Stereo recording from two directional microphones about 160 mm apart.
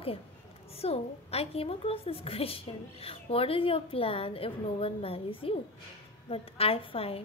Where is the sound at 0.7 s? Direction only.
40° left (ahead or behind).